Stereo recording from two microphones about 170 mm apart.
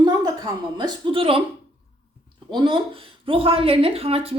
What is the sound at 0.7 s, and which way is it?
Speech, 30° right (ahead or behind).